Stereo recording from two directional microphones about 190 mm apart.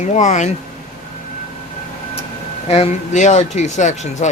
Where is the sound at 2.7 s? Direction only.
35° left (ahead or behind).